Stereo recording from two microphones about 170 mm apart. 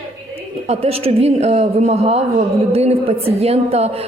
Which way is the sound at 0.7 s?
35° right (ahead or behind).